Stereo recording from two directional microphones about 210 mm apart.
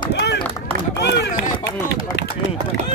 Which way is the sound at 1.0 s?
55° left (ahead or behind).